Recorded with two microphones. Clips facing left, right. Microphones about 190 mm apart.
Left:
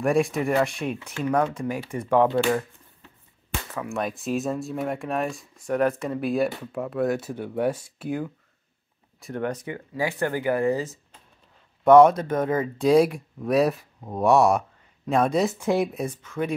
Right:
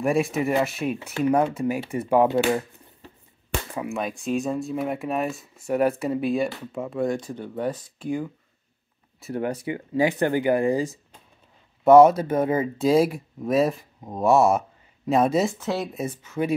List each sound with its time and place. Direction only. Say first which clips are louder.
0.0 s speech: even; centre (ahead or behind)
3.9 s speech: even; centre (ahead or behind)
9.2 s speech: right 2 dB; 10° right (ahead or behind)
9.8 s speech: right 7 dB; 20° right (ahead or behind); by 15.5 s 5° right (ahead or behind)
15.5 s speech: left 4 dB; 10° left (ahead or behind)
15.9 s speech: even; 5° right (ahead or behind)